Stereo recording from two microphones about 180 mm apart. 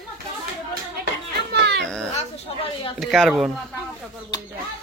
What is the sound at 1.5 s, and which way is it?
Cat, 70° right (ahead or behind).